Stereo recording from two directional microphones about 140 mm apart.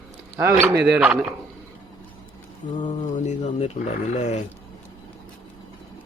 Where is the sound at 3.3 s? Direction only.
55° left (ahead or behind).